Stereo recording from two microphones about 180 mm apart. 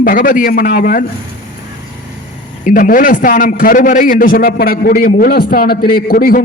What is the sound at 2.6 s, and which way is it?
A man's voice, 50° left (ahead or behind).